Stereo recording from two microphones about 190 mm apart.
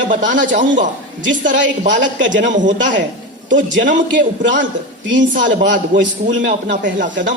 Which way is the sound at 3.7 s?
75° right (ahead or behind).